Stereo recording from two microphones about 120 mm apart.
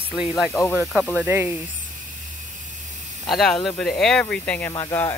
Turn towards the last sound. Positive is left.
turn(degrees=25)  # may be behind; listen again after turning